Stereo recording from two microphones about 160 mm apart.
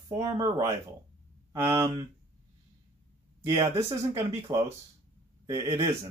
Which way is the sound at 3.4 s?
20° right (ahead or behind).